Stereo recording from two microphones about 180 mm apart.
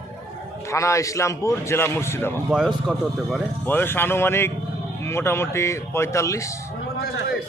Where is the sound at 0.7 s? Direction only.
15° left (ahead or behind).